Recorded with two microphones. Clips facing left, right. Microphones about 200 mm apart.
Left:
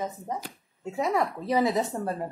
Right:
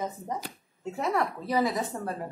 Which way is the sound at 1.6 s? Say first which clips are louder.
Left 2 dB; 25° left (ahead or behind).